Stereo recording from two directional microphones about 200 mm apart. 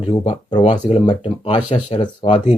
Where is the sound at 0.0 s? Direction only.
25° left (ahead or behind).